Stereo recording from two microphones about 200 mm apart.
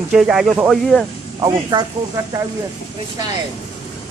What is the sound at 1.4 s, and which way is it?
Speech, 20° right (ahead or behind).